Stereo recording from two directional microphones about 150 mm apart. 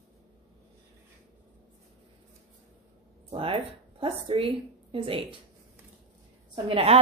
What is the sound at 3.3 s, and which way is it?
A woman's voice, 35° right (ahead or behind).